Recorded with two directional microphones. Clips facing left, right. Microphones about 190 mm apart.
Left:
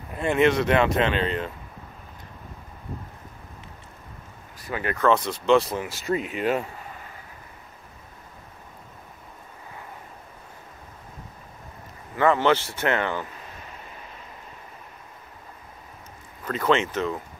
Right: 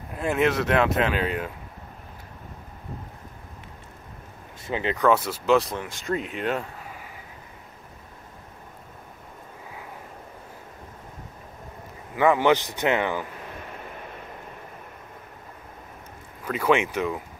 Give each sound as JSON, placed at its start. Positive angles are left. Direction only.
{"t": 0.1, "sound": "speech", "side_deg": 0}
{"t": 4.6, "sound": "speech", "side_deg": -20}
{"t": 12.2, "sound": "speech", "side_deg": -15}
{"t": 13.5, "sound": "vehicle", "side_deg": -60}
{"t": 16.4, "sound": "speech", "side_deg": -10}